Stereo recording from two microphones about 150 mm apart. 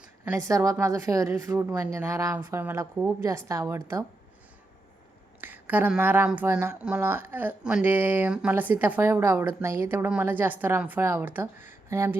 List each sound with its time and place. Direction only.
0.3 s a woman's voice: 20° right (ahead or behind)
5.4 s speech: 10° right (ahead or behind)